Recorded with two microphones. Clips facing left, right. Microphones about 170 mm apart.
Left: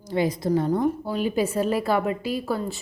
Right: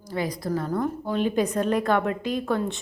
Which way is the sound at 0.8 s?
10° left (ahead or behind).